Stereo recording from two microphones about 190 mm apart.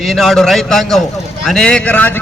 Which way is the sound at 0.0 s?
Centre (ahead or behind).